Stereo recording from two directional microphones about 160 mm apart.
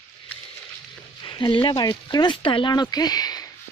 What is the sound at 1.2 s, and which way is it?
Speech, 30° left (ahead or behind).